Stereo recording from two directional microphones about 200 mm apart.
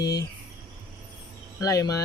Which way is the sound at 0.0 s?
20° left (ahead or behind).